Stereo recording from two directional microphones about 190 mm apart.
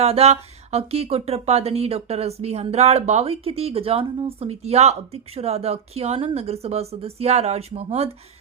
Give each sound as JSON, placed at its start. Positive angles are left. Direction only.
{"t": 0.0, "sound": "speech", "side_deg": -35}